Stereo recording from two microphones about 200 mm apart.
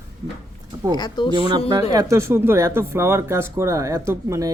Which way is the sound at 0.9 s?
20° left (ahead or behind).